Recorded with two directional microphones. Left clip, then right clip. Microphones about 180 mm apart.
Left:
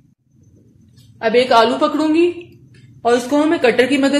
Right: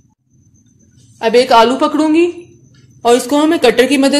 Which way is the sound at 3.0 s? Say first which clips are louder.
Right 4 dB; 50° right (ahead or behind).